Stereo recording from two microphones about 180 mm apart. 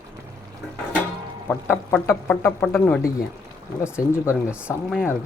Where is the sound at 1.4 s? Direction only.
10° left (ahead or behind).